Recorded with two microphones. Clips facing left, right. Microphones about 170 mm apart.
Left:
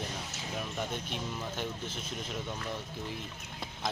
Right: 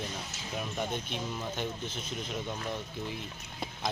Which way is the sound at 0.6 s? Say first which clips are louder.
Right 3 dB; centre (ahead or behind).